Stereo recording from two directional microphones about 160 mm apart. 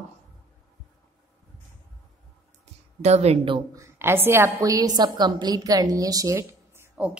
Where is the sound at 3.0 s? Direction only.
45° right (ahead or behind).